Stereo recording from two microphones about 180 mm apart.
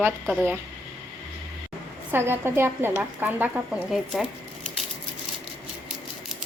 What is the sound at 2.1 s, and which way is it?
Speech, 15° right (ahead or behind).